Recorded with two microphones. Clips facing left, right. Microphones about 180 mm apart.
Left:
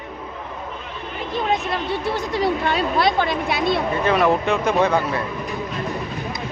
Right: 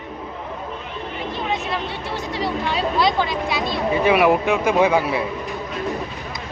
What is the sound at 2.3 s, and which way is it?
Speech, 55° left (ahead or behind).